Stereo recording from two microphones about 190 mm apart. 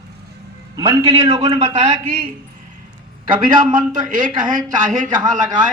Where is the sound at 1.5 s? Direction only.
30° right (ahead or behind).